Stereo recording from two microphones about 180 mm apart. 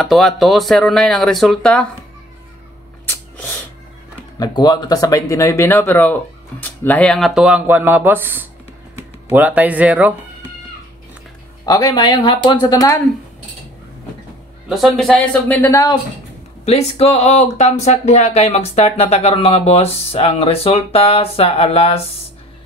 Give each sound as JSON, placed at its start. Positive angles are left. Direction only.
{"t": 0.1, "sound": "speech", "side_deg": 0}
{"t": 3.1, "sound": "a sound", "side_deg": 10}
{"t": 4.4, "sound": "speech", "side_deg": 20}
{"t": 11.6, "sound": "speech", "side_deg": 20}
{"t": 14.7, "sound": "speech", "side_deg": 0}
{"t": 16.6, "sound": "speech", "side_deg": 35}